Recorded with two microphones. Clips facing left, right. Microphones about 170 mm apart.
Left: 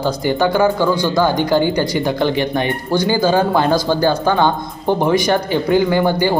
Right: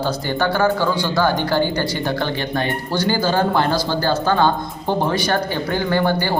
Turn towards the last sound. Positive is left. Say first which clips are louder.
# left 3 dB
turn(degrees=15)  # may be behind; listen again after turning